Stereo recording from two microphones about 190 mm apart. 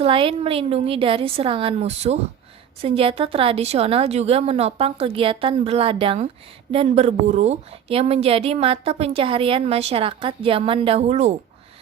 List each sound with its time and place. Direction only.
0.0 s a woman's voice: 30° right (ahead or behind)